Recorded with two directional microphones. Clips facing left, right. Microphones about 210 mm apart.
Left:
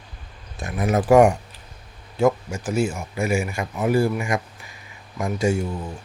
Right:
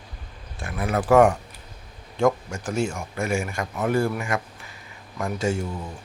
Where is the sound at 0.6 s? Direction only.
20° left (ahead or behind).